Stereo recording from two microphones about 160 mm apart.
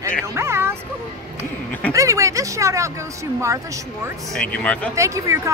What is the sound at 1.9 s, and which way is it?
Speech, 20° right (ahead or behind).